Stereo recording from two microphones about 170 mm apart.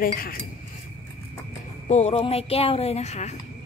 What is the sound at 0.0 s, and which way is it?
Speech, 60° left (ahead or behind).